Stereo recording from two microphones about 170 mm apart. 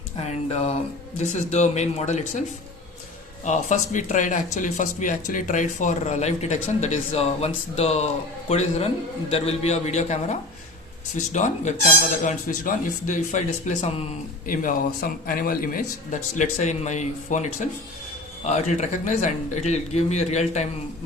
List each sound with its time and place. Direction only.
0.2 s a man's voice: 40° left (ahead or behind)
3.4 s a man's voice: 45° left (ahead or behind)
14.4 s speech: 55° left (ahead or behind)